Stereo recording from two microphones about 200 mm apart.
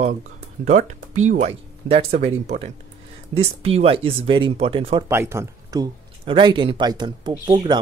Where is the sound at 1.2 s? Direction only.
35° right (ahead or behind).